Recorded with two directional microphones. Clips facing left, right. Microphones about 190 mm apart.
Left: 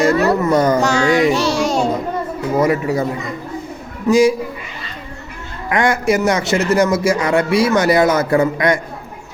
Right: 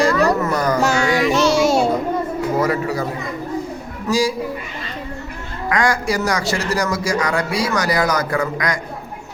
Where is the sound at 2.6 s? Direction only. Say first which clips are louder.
Left 7 dB; 20° left (ahead or behind).